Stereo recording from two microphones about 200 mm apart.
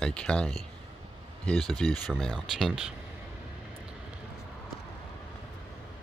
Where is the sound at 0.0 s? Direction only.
5° left (ahead or behind).